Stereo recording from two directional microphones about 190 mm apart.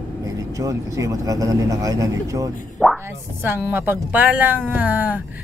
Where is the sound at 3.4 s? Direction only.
10° right (ahead or behind).